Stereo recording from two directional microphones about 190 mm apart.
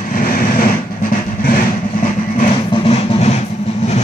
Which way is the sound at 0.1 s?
50° left (ahead or behind).